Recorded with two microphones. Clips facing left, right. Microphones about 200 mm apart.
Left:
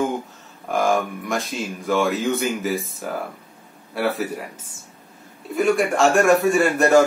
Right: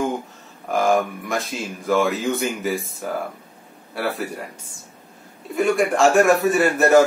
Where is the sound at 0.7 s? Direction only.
Centre (ahead or behind).